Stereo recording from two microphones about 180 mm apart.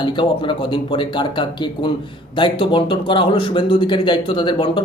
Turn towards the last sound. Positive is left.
turn(degrees=25)  # may be behind; listen again after turning